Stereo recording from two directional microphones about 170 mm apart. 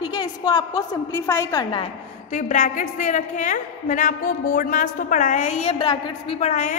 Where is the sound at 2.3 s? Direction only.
45° left (ahead or behind).